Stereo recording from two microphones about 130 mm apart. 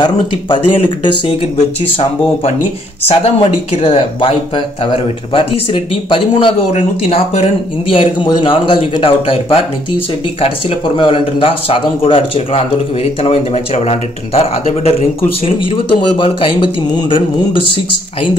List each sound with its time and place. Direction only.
0.0 s speech: 35° left (ahead or behind)
3.1 s speech: 50° left (ahead or behind)
6.7 s speech: 55° left (ahead or behind)
7.9 s speech: 40° left (ahead or behind)
11.0 s speech: 40° left (ahead or behind)